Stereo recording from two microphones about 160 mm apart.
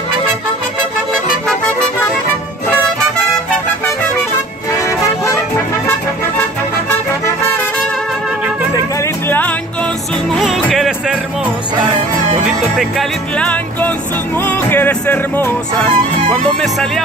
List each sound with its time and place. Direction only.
4.8 s music: 20° left (ahead or behind)
10.3 s music: centre (ahead or behind)
12.7 s music: 5° left (ahead or behind)